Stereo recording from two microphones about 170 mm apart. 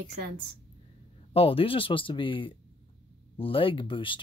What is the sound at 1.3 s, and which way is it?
Speech, 35° left (ahead or behind).